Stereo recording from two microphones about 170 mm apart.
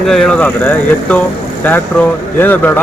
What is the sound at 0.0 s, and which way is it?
Speech, 5° left (ahead or behind).